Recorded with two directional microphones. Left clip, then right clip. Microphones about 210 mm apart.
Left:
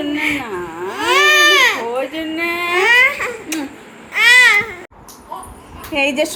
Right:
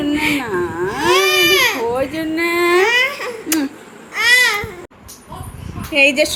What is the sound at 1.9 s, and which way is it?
Female singing, 55° right (ahead or behind).